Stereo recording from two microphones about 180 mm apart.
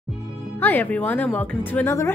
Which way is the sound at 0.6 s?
10° left (ahead or behind).